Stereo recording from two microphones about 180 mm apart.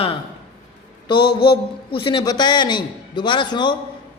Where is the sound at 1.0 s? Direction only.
30° left (ahead or behind).